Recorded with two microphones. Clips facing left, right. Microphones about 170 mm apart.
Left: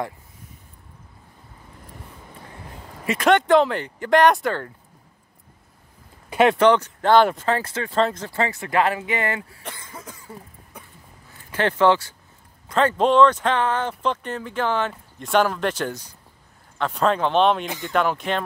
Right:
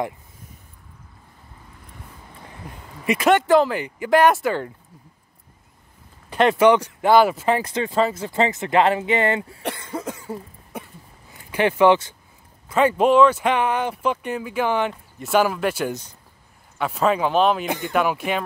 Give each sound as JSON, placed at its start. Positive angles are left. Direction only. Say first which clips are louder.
{"t": 3.1, "sound": "speech", "louder": "right 1 dB", "side_deg": -5}
{"t": 6.6, "sound": "speech", "louder": "right 1 dB", "side_deg": -10}
{"t": 8.0, "sound": "speech", "louder": "even", "side_deg": -5}
{"t": 8.3, "sound": "speech", "louder": "right 4 dB", "side_deg": -20}
{"t": 9.6, "sound": "cough", "louder": "right 9 dB", "side_deg": -70}
{"t": 11.5, "sound": "speech", "louder": "right 2 dB", "side_deg": -15}
{"t": 15.9, "sound": "speech", "louder": "right 3 dB", "side_deg": -20}
{"t": 16.7, "sound": "speech", "louder": "right 1 dB", "side_deg": -10}
{"t": 17.6, "sound": "speech", "louder": "right 5 dB", "side_deg": -60}
{"t": 17.9, "sound": "speech", "louder": "even", "side_deg": -10}